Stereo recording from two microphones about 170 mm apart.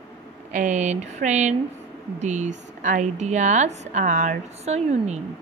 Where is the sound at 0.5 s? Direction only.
45° right (ahead or behind).